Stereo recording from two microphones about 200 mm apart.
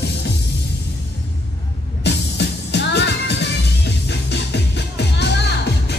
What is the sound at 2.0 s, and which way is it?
Music, 60° left (ahead or behind).